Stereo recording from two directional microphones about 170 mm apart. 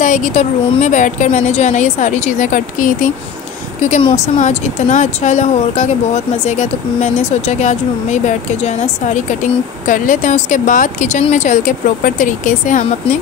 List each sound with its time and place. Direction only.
0.0 s a woman's voice: 50° left (ahead or behind)
3.9 s a woman's voice: 40° left (ahead or behind)